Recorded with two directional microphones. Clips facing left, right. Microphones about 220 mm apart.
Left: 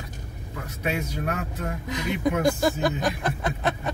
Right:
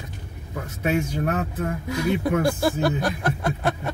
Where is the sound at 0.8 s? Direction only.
50° right (ahead or behind).